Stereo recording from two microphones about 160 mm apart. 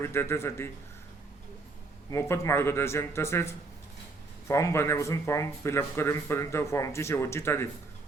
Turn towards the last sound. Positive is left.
turn(degrees=15)  # may be behind; listen again after turning